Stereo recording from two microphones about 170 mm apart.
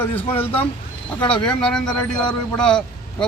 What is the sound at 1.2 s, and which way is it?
Speech, 30° left (ahead or behind).